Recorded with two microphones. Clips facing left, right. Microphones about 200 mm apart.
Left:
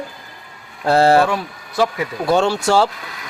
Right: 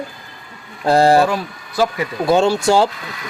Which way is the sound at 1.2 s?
Centre (ahead or behind).